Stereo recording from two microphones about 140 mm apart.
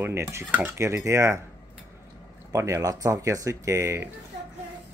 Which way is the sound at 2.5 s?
20° right (ahead or behind).